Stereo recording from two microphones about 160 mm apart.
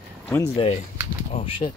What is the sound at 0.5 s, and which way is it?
Speech, 40° left (ahead or behind).